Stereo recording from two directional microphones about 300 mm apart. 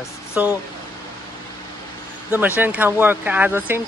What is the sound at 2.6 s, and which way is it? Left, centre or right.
Speech, centre.